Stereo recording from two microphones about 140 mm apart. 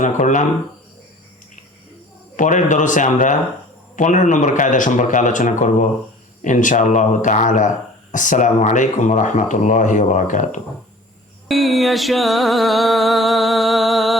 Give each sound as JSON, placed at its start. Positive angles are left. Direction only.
{"t": 0.2, "sound": "speech", "side_deg": 65}
{"t": 2.3, "sound": "speech", "side_deg": 65}
{"t": 11.4, "sound": "music", "side_deg": 0}